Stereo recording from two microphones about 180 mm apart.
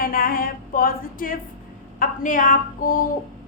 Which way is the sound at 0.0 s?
55° left (ahead or behind).